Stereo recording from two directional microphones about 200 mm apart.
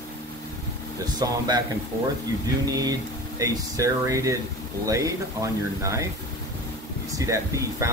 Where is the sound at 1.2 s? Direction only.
20° right (ahead or behind).